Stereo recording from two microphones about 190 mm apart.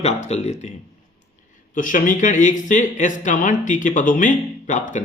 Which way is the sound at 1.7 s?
45° left (ahead or behind).